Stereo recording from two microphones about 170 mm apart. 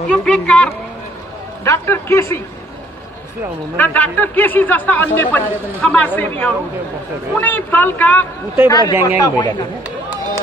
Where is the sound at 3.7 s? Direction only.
10° left (ahead or behind).